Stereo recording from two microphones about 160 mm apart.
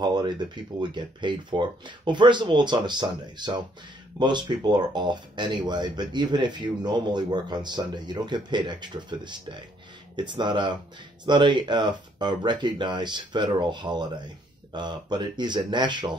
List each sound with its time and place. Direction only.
0.0 s speech: 25° right (ahead or behind)